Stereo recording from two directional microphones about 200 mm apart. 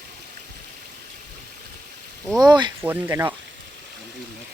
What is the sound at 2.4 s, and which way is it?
Speech, 20° right (ahead or behind).